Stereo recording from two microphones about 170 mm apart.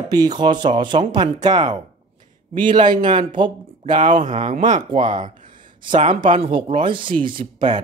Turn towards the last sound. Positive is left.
turn(degrees=-30)  # may be behind; listen again after turning